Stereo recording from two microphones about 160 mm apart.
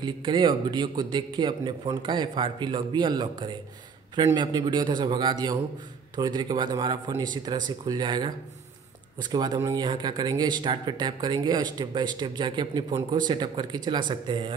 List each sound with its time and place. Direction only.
0.0 s speech: 30° right (ahead or behind)
9.3 s speech: 25° right (ahead or behind)